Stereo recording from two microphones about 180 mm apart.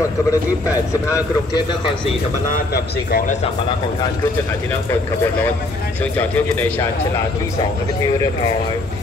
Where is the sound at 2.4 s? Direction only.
50° left (ahead or behind).